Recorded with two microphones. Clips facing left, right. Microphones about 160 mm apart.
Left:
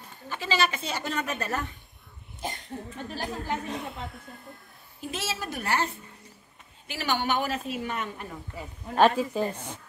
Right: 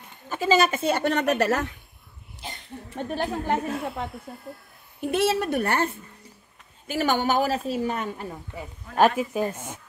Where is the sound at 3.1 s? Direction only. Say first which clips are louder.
Right 7 dB; 55° right (ahead or behind).